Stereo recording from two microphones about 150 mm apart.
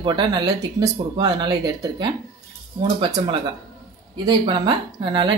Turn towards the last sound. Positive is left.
turn(degrees=-30)  # may be behind; listen again after turning